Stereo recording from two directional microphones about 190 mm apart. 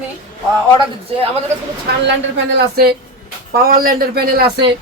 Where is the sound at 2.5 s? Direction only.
55° right (ahead or behind).